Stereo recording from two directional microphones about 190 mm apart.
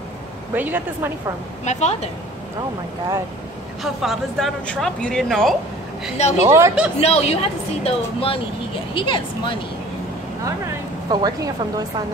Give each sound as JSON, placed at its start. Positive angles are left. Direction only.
{"t": 0.6, "sound": "a woman's voice", "side_deg": -10}
{"t": 1.6, "sound": "a woman's voice", "side_deg": 35}
{"t": 3.8, "sound": "speech", "side_deg": 0}
{"t": 6.1, "sound": "a woman's voice", "side_deg": 35}
{"t": 6.4, "sound": "a woman's voice", "side_deg": -15}
{"t": 7.0, "sound": "a woman's voice", "side_deg": 35}
{"t": 11.1, "sound": "a woman's voice", "side_deg": -20}